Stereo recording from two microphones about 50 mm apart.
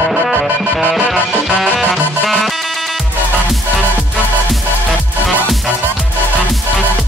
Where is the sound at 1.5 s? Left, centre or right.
Centre.